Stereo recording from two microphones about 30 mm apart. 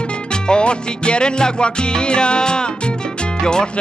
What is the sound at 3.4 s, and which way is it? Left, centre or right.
Speech, left.